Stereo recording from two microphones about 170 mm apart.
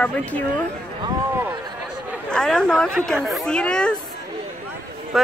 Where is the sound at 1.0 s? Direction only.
25° right (ahead or behind).